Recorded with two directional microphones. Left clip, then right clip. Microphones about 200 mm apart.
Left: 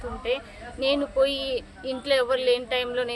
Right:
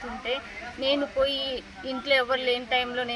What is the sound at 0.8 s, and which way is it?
Speech, 25° left (ahead or behind).